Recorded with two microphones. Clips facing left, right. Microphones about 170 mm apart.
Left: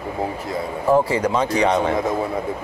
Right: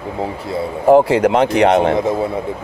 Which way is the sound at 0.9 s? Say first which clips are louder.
Right 7 dB; 70° right (ahead or behind).